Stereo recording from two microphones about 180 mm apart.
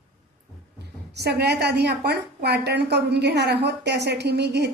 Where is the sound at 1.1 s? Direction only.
65° right (ahead or behind).